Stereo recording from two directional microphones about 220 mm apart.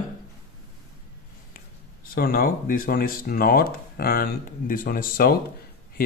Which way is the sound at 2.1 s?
40° left (ahead or behind).